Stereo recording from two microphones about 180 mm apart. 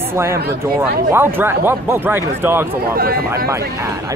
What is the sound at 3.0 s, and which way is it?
Speech, 55° right (ahead or behind).